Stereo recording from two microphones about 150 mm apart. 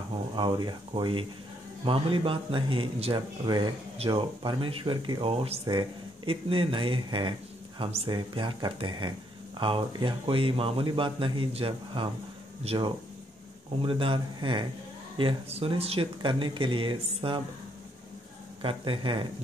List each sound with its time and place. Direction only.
0.4 s speech: 30° right (ahead or behind)
18.6 s speech: 35° right (ahead or behind)